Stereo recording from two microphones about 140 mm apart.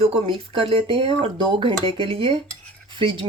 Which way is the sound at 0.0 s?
40° right (ahead or behind).